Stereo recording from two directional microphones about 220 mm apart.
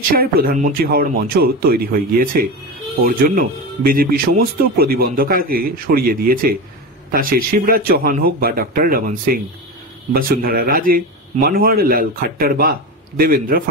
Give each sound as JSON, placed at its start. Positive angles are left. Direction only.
{"t": 0.1, "sound": "a man's voice", "side_deg": -40}